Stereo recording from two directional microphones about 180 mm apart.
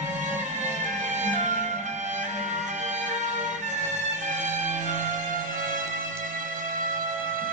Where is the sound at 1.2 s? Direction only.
40° right (ahead or behind).